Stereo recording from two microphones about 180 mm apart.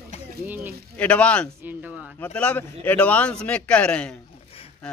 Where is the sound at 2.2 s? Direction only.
10° left (ahead or behind).